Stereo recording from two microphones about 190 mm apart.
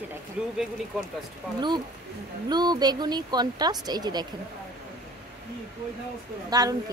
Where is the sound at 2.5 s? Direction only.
20° right (ahead or behind).